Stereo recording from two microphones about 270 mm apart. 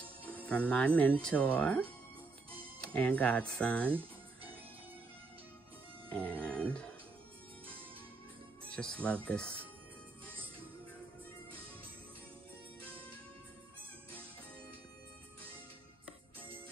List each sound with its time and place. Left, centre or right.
0.5 s speech: centre
3.9 s music: centre
6.0 s a sound: centre
8.6 s speech: centre